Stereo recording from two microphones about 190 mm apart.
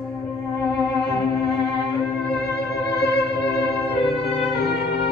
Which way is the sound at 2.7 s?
60° left (ahead or behind).